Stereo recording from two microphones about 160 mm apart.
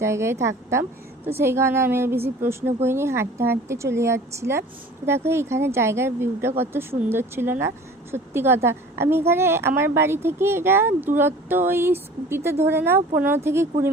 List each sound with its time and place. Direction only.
0.0 s a woman's voice: 15° right (ahead or behind)